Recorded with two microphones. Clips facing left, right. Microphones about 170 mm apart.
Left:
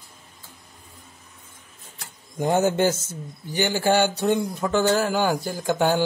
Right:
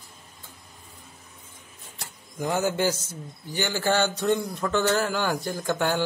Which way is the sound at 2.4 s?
25° left (ahead or behind).